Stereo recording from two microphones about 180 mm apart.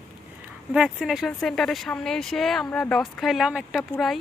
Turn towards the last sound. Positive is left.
turn(degrees=0)  # may be behind; listen again after turning